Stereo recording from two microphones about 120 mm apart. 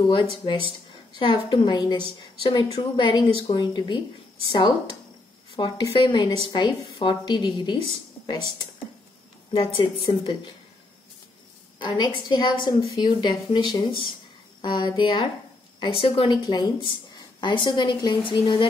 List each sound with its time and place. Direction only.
0.0 s a woman's voice: 45° left (ahead or behind)
9.8 s a woman's voice: 40° left (ahead or behind)
11.8 s a woman's voice: 40° left (ahead or behind)
16.4 s a woman's voice: 35° left (ahead or behind)